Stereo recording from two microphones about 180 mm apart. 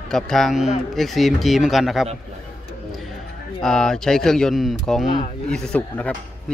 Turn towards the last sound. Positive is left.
turn(degrees=5)  # may be behind; listen again after turning